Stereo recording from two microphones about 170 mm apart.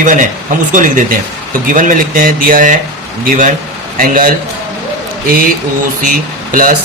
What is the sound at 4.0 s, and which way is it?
Speech, 55° right (ahead or behind).